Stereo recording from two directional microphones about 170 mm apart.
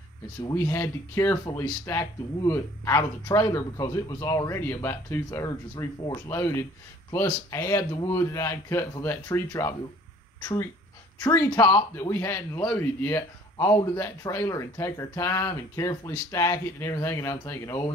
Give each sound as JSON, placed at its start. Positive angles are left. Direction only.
{"t": 0.4, "sound": "a man's voice", "side_deg": 15}